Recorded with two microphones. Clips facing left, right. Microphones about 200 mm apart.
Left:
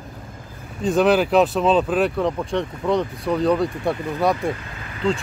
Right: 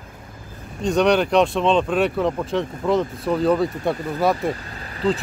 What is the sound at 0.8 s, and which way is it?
Speech, 5° left (ahead or behind).